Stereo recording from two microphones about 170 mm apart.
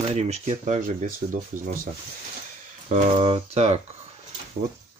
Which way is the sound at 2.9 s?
45° right (ahead or behind).